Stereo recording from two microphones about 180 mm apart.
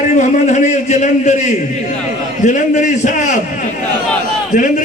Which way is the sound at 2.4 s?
45° left (ahead or behind).